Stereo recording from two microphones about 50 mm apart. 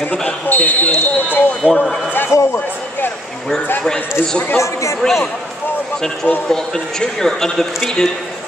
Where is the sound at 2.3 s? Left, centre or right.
Left.